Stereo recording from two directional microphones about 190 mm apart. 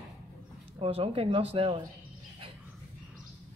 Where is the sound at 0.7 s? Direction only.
30° right (ahead or behind).